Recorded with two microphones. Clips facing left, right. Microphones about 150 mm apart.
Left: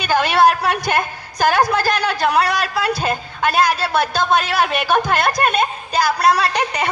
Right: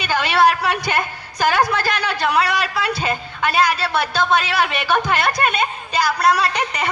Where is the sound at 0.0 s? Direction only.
45° left (ahead or behind).